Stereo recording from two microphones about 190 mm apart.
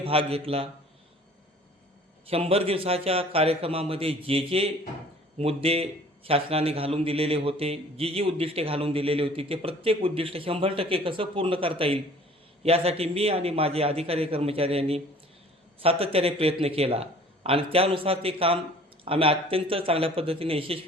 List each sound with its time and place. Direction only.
0.0 s a man's voice: 30° right (ahead or behind)
2.3 s a man's voice: 30° right (ahead or behind)